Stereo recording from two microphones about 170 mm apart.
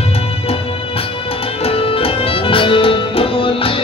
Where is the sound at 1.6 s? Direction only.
35° left (ahead or behind).